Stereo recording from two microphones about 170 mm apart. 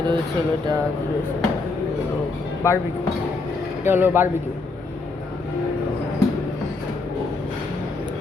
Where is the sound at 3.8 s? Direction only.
10° right (ahead or behind).